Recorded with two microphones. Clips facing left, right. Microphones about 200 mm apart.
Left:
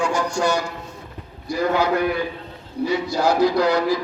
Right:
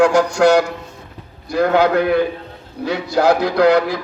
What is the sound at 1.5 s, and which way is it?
Mantra, 60° right (ahead or behind).